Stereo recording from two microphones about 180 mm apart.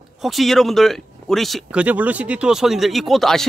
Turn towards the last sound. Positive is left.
turn(degrees=0)  # may be behind; listen again after turning